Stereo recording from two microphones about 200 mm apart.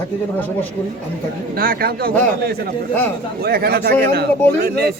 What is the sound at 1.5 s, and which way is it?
A man's voice, 45° right (ahead or behind).